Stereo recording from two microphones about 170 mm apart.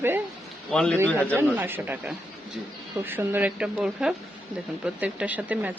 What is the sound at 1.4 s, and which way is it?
Speech, 10° right (ahead or behind).